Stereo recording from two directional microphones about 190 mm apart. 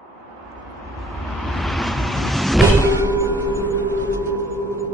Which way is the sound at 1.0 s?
Centre (ahead or behind).